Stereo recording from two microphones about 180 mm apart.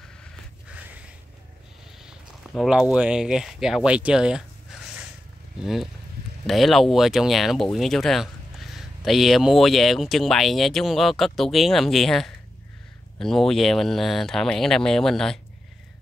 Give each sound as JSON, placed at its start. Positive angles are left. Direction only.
{"t": 2.0, "sound": "speech", "side_deg": -5}